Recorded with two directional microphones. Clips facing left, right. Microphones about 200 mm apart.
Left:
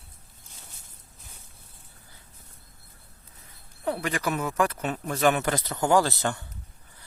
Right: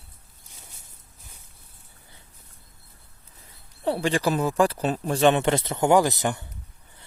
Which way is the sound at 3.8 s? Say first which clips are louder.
Right 5 dB; 30° right (ahead or behind).